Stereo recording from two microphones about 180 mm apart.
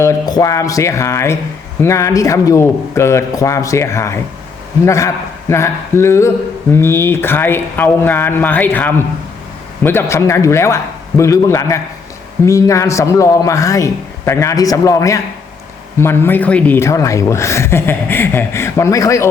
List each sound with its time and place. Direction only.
0.0 s speech: 20° left (ahead or behind)